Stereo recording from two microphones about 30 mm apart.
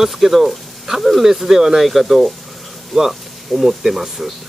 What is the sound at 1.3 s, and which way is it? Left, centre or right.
Speech, centre.